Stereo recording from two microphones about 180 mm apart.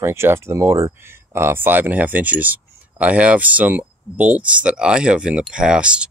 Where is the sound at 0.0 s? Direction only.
15° right (ahead or behind).